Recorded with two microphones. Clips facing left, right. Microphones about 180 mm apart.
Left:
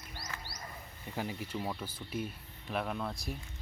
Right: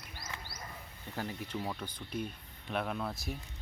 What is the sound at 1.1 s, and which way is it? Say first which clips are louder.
Speech: left 1 dB; 10° left (ahead or behind).